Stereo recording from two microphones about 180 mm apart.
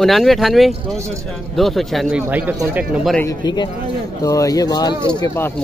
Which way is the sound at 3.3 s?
25° left (ahead or behind).